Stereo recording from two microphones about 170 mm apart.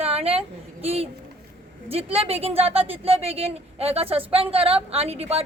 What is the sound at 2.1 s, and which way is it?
A woman's voice, 35° right (ahead or behind).